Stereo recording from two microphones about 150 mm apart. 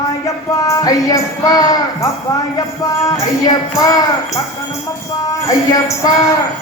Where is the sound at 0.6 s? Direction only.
25° left (ahead or behind).